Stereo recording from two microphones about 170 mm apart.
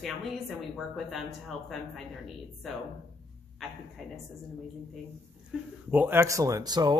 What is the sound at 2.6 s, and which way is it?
A woman's voice, centre (ahead or behind).